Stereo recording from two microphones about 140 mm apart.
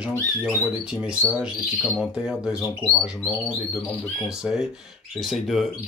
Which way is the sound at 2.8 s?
15° left (ahead or behind).